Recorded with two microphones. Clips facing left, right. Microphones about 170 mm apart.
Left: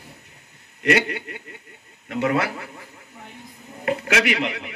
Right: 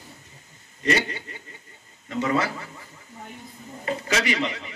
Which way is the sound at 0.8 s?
60° left (ahead or behind).